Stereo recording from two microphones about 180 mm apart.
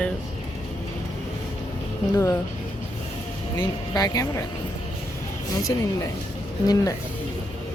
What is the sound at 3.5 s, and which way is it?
Speech, 20° left (ahead or behind).